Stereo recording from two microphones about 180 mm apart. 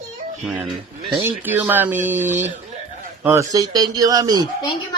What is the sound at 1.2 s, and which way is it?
A man's voice, 10° right (ahead or behind).